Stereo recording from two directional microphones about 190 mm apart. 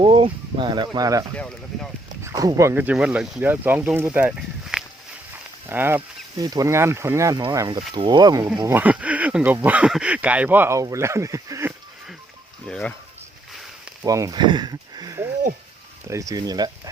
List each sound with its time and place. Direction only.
0.0 s speech: 30° right (ahead or behind)
2.2 s speech: 20° right (ahead or behind)
12.6 s a sound: 5° left (ahead or behind)
14.0 s speech: 15° right (ahead or behind)